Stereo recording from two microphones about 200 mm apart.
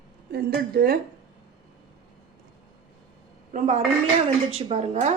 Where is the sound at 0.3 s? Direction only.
55° right (ahead or behind).